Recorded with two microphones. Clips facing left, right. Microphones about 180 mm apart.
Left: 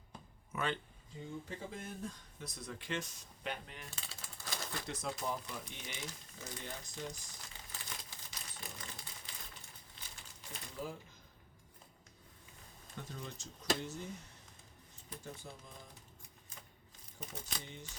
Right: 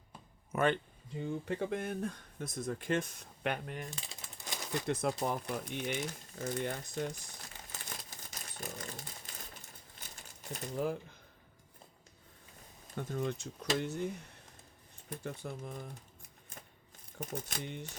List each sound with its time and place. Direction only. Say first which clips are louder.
0.5 s speech: right 8 dB; 55° right (ahead or behind)
3.8 s typewriter: right 4 dB; 15° right (ahead or behind)
4.9 s speech: right 7 dB; 55° right (ahead or behind)
7.7 s crumpling: right 2 dB; 45° right (ahead or behind)
10.5 s speech: right 9 dB; 55° right (ahead or behind)
13.0 s speech: right 11 dB; 55° right (ahead or behind)
15.1 s speech: right 8 dB; 65° right (ahead or behind)
17.2 s speech: right 8 dB; 60° right (ahead or behind)